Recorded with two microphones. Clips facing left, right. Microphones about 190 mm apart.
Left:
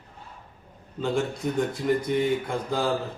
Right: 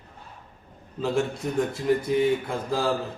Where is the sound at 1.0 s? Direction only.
Centre (ahead or behind).